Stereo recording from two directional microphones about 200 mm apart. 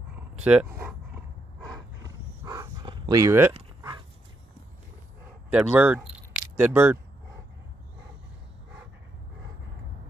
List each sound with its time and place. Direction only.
0.4 s speech: 5° right (ahead or behind)
1.6 s a sound: 15° right (ahead or behind)
5.5 s speech: 5° right (ahead or behind)